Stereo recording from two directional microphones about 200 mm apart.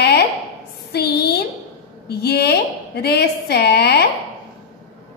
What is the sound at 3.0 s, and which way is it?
A woman's voice, 55° left (ahead or behind).